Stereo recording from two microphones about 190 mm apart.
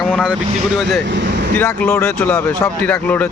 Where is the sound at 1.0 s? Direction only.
70° right (ahead or behind).